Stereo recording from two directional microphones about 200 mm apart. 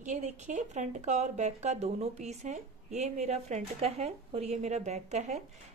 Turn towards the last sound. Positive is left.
turn(degrees=-35)  # may be behind; listen again after turning